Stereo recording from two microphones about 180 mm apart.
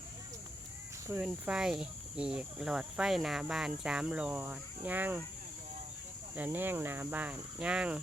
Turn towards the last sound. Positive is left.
turn(degrees=-5)  # may be behind; listen again after turning